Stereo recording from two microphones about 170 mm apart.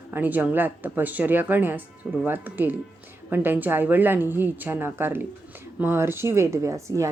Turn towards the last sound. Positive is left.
turn(degrees=-15)  # may be behind; listen again after turning